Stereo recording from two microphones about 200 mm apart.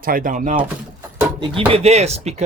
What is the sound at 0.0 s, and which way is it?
Speech, 45° right (ahead or behind).